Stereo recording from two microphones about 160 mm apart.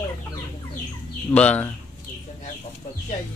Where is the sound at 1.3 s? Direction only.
10° left (ahead or behind).